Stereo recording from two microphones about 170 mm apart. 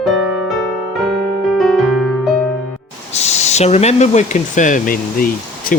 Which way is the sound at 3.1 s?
40° left (ahead or behind).